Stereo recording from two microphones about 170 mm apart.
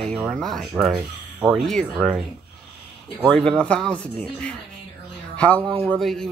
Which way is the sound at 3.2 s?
5° left (ahead or behind).